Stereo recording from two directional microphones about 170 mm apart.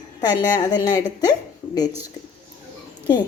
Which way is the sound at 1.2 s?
25° left (ahead or behind).